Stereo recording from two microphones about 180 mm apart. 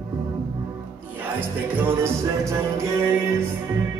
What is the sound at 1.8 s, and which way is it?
Music, 15° right (ahead or behind).